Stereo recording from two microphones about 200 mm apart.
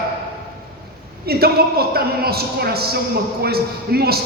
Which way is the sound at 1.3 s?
50° right (ahead or behind).